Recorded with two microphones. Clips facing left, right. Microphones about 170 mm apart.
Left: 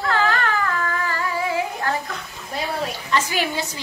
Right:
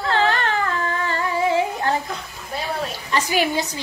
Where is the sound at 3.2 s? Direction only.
15° right (ahead or behind).